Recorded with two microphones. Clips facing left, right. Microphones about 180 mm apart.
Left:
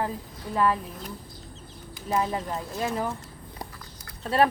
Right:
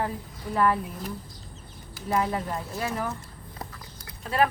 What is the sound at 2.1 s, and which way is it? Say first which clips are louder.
Speech: even; 20° left (ahead or behind).